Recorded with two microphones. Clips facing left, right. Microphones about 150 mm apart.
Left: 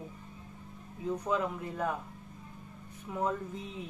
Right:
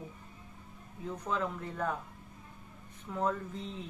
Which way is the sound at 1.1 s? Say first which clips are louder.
Left 3 dB; 10° left (ahead or behind).